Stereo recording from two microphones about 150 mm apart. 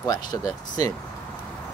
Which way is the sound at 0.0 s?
25° left (ahead or behind).